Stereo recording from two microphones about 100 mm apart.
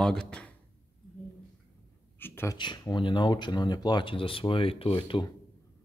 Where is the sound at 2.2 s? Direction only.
25° left (ahead or behind).